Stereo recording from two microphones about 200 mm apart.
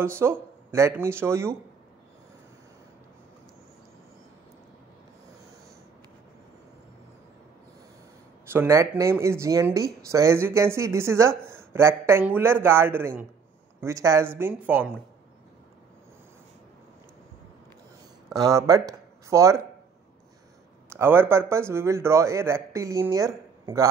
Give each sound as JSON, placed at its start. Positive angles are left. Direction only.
{"t": 0.0, "sound": "speech", "side_deg": -10}
{"t": 8.5, "sound": "speech", "side_deg": -15}
{"t": 18.3, "sound": "speech", "side_deg": -15}
{"t": 20.9, "sound": "speech", "side_deg": -10}